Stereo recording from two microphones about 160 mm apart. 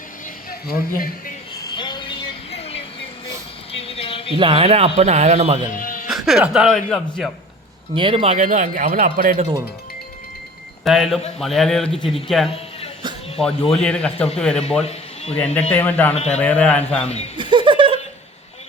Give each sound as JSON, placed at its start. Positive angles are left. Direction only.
{"t": 0.7, "sound": "speech", "side_deg": 65}
{"t": 1.6, "sound": "vehicle", "side_deg": 30}
{"t": 3.7, "sound": "a sound", "side_deg": 35}
{"t": 4.4, "sound": "speech", "side_deg": -35}
{"t": 5.7, "sound": "music", "side_deg": 55}
{"t": 6.1, "sound": "speech", "side_deg": 0}
{"t": 7.9, "sound": "speech", "side_deg": -35}
{"t": 10.8, "sound": "speech", "side_deg": 0}
{"t": 13.7, "sound": "speech", "side_deg": 5}
{"t": 14.8, "sound": "a sound", "side_deg": 40}
{"t": 15.7, "sound": "a man's voice", "side_deg": 10}
{"t": 16.1, "sound": "a man's voice", "side_deg": 45}
{"t": 16.4, "sound": "a man's voice", "side_deg": 10}
{"t": 17.3, "sound": "chuckle", "side_deg": -30}